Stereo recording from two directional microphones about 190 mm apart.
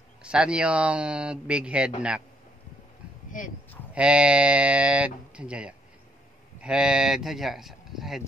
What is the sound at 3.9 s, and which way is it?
Chicken, 5° right (ahead or behind).